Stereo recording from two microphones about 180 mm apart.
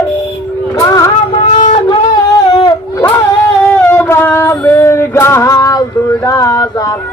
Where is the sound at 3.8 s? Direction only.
10° left (ahead or behind).